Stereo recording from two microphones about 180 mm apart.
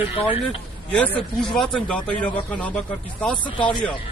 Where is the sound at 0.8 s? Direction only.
5° left (ahead or behind).